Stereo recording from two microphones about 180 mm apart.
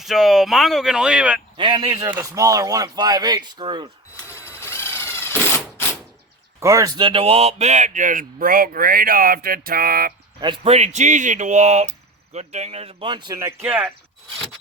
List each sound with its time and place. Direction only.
0.0 s speech: centre (ahead or behind)
1.5 s speech: 25° right (ahead or behind)
4.4 s sewing machine: 15° left (ahead or behind)
6.6 s speech: 15° right (ahead or behind); by 10.1 s 55° right (ahead or behind)
10.4 s speech: 30° right (ahead or behind); by 13.9 s 10° right (ahead or behind)